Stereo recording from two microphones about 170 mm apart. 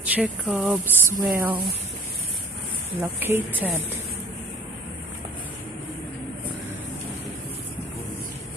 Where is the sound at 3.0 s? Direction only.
10° right (ahead or behind).